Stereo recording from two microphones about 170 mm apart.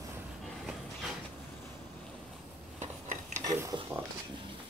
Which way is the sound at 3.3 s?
15° right (ahead or behind).